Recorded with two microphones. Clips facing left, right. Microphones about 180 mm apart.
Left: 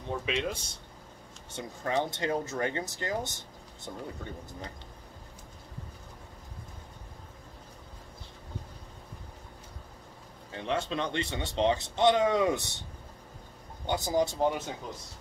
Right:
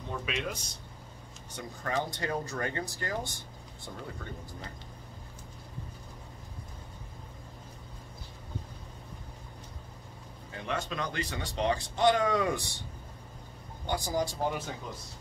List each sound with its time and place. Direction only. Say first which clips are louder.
0.2 s speech: left 3 dB; 25° left (ahead or behind)
10.5 s speech: left 4 dB; 30° left (ahead or behind)
13.8 s speech: left 3 dB; 20° left (ahead or behind)